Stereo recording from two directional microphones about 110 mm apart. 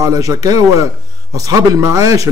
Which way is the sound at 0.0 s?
35° right (ahead or behind).